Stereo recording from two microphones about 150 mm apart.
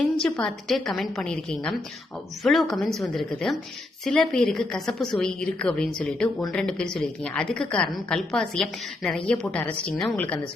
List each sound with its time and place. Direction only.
0.3 s a woman's voice: 5° left (ahead or behind)